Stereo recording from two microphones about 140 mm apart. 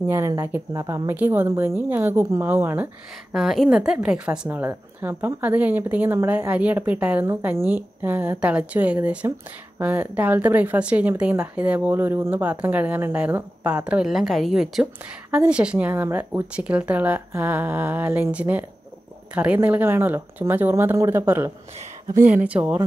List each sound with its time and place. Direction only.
0.0 s speech: 20° right (ahead or behind)
3.3 s speech: centre (ahead or behind)